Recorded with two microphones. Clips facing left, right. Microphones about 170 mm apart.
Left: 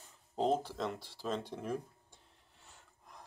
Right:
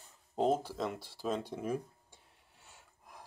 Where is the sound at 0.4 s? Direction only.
5° right (ahead or behind).